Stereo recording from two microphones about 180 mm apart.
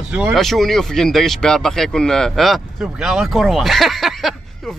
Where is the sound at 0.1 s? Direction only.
5° right (ahead or behind).